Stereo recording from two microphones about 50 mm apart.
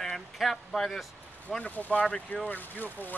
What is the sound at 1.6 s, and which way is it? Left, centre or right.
Speech, left.